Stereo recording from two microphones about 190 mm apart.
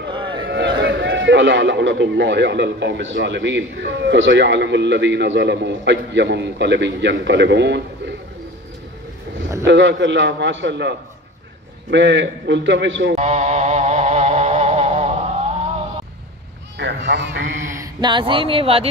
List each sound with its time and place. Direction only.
0.1 s a sound: 25° right (ahead or behind)
0.5 s a man's voice: 65° right (ahead or behind)
9.7 s a man's voice: 70° right (ahead or behind)
13.1 s vehicle: 35° right (ahead or behind)
16.7 s a man's voice: 70° right (ahead or behind)
17.7 s speech: 25° right (ahead or behind)